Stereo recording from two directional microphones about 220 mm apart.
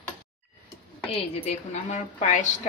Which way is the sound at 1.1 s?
30° left (ahead or behind).